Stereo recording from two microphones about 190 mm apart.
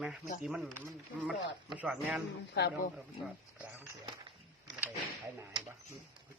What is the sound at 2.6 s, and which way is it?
Speech, 60° left (ahead or behind).